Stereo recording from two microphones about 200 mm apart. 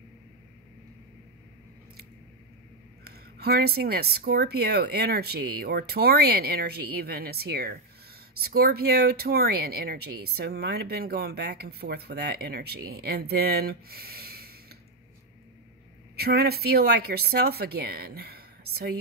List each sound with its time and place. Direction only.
3.0 s speech: 50° right (ahead or behind)
16.2 s speech: 50° right (ahead or behind)